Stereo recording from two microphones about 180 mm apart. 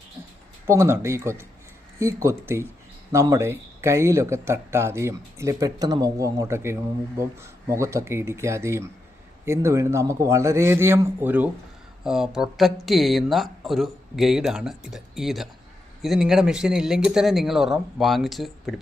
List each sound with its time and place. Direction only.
0.7 s speech: 15° right (ahead or behind); by 18.7 s centre (ahead or behind)